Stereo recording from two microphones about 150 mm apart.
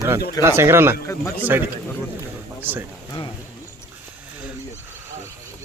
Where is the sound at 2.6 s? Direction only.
15° right (ahead or behind).